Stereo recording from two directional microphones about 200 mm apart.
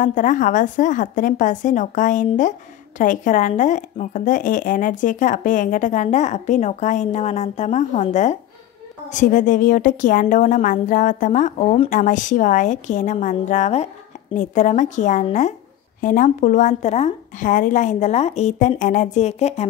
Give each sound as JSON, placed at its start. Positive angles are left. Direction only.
{"t": 0.0, "sound": "speech", "side_deg": 40}